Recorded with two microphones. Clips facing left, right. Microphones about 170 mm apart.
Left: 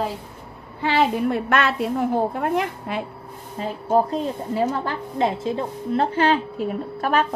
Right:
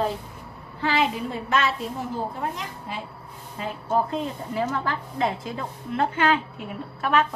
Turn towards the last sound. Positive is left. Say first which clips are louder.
# left 2 dB
turn(degrees=40)  # may be behind; listen again after turning